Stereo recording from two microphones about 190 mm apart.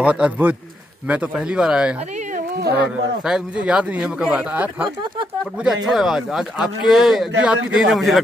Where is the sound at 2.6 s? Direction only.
60° right (ahead or behind).